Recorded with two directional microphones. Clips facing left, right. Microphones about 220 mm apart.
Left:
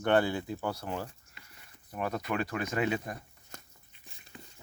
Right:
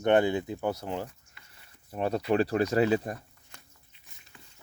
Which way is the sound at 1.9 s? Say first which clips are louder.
Right 6 dB; 30° right (ahead or behind).